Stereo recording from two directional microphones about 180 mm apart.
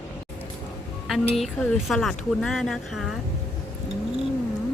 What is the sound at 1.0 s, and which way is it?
Speech, centre (ahead or behind).